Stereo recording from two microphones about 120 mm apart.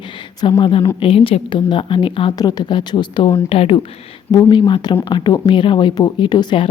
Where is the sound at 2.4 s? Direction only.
30° left (ahead or behind).